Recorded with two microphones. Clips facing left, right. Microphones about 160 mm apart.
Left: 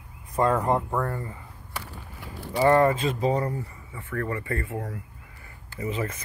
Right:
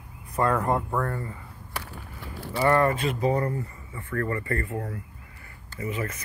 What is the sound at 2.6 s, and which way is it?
Speech, 25° left (ahead or behind).